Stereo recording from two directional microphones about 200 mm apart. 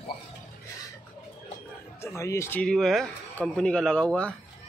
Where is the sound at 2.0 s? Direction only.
15° left (ahead or behind).